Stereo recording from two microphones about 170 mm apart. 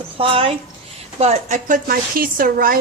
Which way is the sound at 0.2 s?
35° right (ahead or behind).